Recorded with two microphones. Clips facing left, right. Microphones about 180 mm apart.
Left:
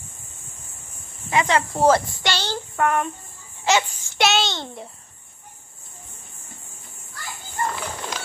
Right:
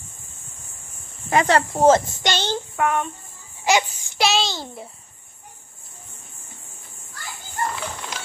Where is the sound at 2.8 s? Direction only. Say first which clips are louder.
Left 2 dB; centre (ahead or behind).